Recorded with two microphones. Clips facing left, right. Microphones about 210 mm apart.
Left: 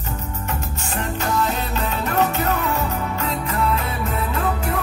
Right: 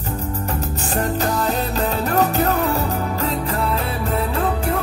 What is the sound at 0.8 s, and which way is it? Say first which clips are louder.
Music: right 4 dB; 35° right (ahead or behind).